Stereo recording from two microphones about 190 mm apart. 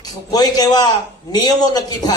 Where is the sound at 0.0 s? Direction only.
20° left (ahead or behind).